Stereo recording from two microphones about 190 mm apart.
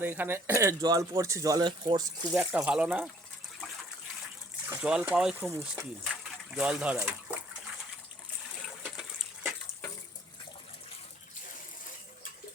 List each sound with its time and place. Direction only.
0.0 s speech: 10° right (ahead or behind)
2.3 s speech: 5° right (ahead or behind)
4.7 s speech: 5° right (ahead or behind)
6.5 s speech: 5° right (ahead or behind)
8.8 s water: 5° right (ahead or behind)